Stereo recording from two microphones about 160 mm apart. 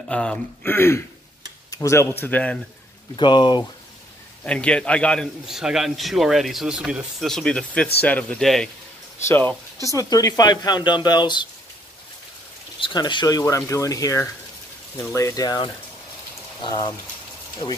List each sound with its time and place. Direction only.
0.1 s speech: 5° left (ahead or behind)
3.2 s speech: 30° left (ahead or behind)
4.5 s a man's voice: 5° left (ahead or behind)
9.9 s speech: 20° left (ahead or behind)
12.8 s speech: 30° left (ahead or behind)
13.4 s speech: 15° left (ahead or behind)